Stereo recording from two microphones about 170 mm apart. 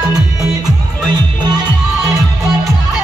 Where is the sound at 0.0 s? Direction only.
25° right (ahead or behind).